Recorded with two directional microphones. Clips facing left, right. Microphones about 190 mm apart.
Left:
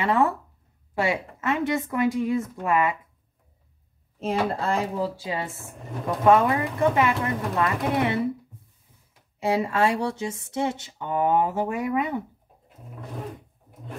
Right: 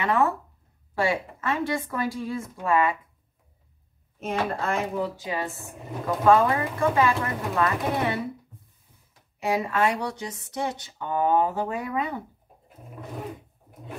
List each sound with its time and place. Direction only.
0.0 s speech: 25° left (ahead or behind)
4.2 s speech: 30° left (ahead or behind)
5.6 s speech: centre (ahead or behind)
6.2 s speech: 20° left (ahead or behind)
9.4 s speech: 30° left (ahead or behind)